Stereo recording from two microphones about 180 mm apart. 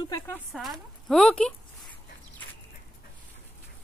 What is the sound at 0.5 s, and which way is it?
Speech, centre (ahead or behind).